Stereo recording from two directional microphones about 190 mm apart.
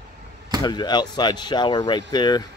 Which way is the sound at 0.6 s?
20° left (ahead or behind).